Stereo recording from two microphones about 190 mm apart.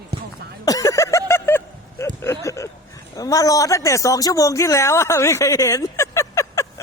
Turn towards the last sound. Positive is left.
turn(degrees=15)  # may be behind; listen again after turning